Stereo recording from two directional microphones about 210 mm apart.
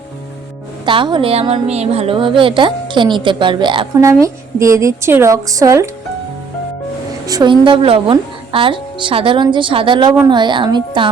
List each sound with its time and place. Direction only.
0.9 s a woman's voice: 20° right (ahead or behind)
7.3 s a woman's voice: 20° right (ahead or behind)